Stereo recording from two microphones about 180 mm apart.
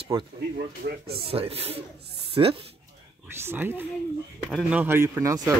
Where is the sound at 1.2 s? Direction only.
30° right (ahead or behind).